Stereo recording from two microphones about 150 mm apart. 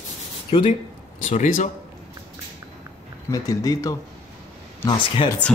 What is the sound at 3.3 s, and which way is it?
Speech, 25° left (ahead or behind).